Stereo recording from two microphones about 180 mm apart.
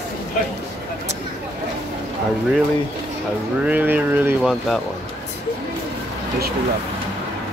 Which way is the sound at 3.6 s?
10° right (ahead or behind).